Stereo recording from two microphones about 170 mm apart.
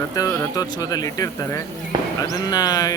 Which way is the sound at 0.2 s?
20° left (ahead or behind).